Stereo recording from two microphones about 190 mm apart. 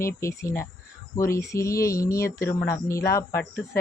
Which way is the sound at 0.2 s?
15° left (ahead or behind).